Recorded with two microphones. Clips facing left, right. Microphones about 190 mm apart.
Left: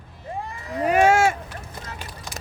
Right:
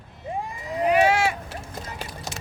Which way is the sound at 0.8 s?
45° left (ahead or behind).